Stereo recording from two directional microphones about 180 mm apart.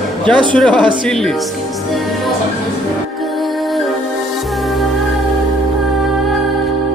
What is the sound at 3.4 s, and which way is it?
Music, centre (ahead or behind).